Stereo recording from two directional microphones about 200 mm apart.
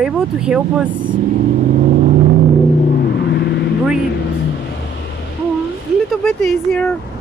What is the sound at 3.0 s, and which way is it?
Vehicle, 55° left (ahead or behind).